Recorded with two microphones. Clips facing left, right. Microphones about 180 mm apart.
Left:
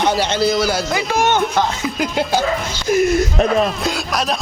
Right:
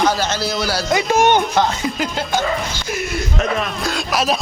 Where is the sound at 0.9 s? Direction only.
15° right (ahead or behind).